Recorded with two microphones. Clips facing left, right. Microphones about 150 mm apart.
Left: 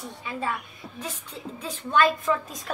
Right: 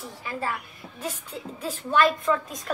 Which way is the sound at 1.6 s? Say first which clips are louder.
Even; centre (ahead or behind).